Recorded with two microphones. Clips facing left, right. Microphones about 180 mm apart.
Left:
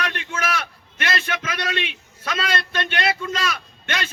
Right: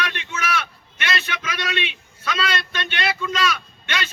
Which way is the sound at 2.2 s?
50° left (ahead or behind).